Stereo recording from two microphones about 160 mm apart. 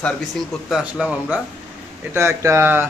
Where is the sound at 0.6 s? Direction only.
5° right (ahead or behind).